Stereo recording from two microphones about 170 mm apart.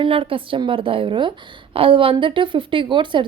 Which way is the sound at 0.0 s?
30° right (ahead or behind).